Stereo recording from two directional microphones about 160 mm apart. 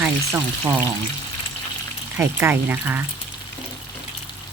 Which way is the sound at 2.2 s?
15° right (ahead or behind).